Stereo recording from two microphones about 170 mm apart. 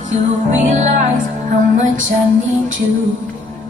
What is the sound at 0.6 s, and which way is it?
Music, 45° right (ahead or behind).